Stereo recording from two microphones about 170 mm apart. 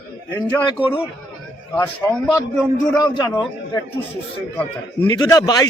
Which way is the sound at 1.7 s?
10° left (ahead or behind).